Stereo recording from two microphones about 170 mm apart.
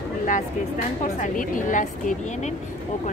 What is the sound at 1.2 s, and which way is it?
Speech, 50° left (ahead or behind).